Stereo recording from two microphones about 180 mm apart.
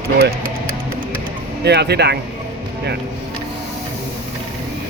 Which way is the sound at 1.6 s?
65° right (ahead or behind).